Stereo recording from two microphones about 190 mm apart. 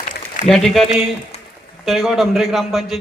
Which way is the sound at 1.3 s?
35° left (ahead or behind).